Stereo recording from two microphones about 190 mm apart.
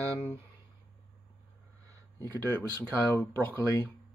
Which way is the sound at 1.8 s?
15° right (ahead or behind).